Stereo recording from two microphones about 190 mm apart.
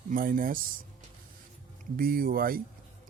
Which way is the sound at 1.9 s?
50° right (ahead or behind).